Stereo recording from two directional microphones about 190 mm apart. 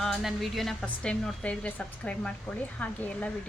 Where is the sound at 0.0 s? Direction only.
Centre (ahead or behind).